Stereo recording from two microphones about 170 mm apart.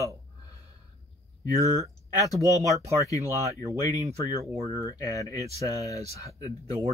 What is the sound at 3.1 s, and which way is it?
Speech, 20° left (ahead or behind).